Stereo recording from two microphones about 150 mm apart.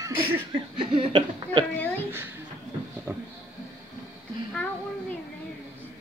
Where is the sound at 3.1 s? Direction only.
15° right (ahead or behind).